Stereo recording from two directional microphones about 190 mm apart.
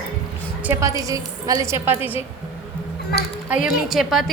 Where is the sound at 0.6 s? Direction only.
15° right (ahead or behind).